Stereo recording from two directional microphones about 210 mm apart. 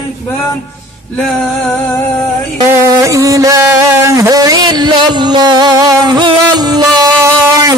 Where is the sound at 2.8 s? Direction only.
15° right (ahead or behind).